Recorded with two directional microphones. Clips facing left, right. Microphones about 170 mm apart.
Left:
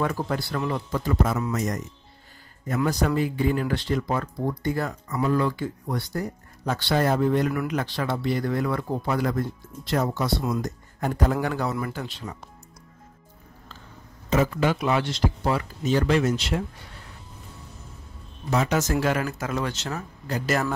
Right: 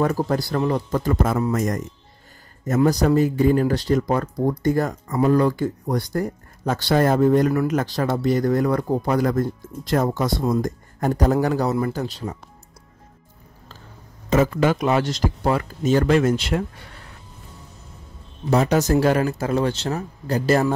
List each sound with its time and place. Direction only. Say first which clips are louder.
0.0 s a man's voice: right 5 dB; 40° right (ahead or behind)
14.3 s speech: right 4 dB; 50° right (ahead or behind)
18.5 s speech: right 6 dB; 35° right (ahead or behind)